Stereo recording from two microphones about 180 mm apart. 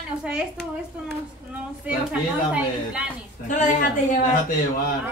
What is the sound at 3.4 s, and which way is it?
Speech, 40° left (ahead or behind).